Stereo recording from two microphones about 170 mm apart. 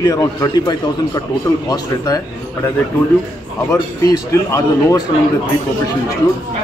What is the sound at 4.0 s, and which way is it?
A man's voice, 20° left (ahead or behind).